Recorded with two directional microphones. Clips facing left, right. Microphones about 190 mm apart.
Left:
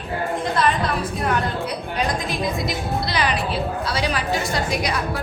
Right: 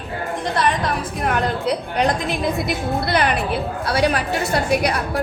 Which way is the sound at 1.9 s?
60° right (ahead or behind).